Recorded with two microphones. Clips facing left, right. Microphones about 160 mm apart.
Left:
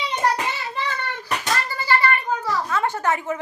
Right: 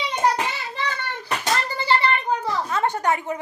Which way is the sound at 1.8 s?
25° right (ahead or behind).